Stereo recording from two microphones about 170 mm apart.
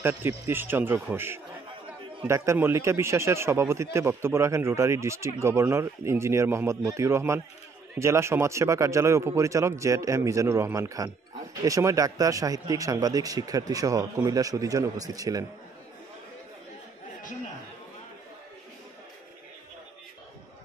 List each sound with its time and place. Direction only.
0.0 s a man's voice: 15° right (ahead or behind)